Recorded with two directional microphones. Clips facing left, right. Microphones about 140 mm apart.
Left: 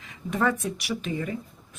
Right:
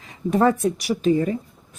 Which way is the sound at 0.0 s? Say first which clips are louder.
Right 7 dB; 35° right (ahead or behind).